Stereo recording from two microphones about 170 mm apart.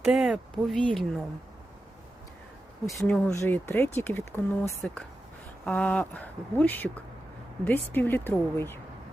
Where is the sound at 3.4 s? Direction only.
10° left (ahead or behind).